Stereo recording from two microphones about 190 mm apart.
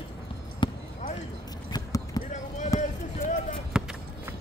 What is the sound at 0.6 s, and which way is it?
Basketball bounce, 25° left (ahead or behind).